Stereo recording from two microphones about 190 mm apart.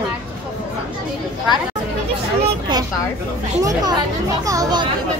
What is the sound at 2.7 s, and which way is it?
Speech, 25° right (ahead or behind).